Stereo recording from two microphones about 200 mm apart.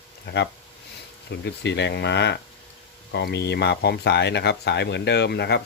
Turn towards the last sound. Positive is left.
turn(degrees=55)  # may be behind; listen again after turning